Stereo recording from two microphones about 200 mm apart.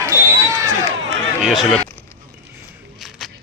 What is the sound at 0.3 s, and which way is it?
Basketball bounce, 15° right (ahead or behind).